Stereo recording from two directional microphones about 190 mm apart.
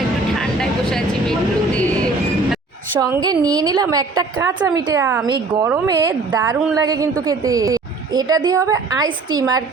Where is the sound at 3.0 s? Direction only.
20° right (ahead or behind).